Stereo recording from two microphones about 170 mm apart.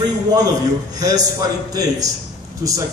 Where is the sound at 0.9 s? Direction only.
20° right (ahead or behind).